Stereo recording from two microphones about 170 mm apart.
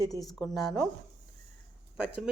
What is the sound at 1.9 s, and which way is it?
Speech, 5° right (ahead or behind).